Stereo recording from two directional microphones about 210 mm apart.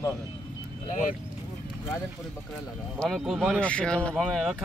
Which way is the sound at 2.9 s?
Centre (ahead or behind).